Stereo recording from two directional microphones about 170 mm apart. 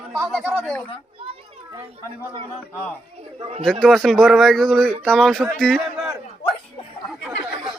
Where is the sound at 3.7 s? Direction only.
Centre (ahead or behind).